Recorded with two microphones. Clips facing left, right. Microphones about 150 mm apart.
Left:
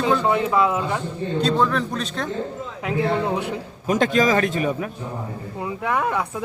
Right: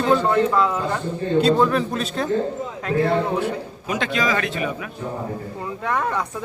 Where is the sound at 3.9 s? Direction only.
45° left (ahead or behind).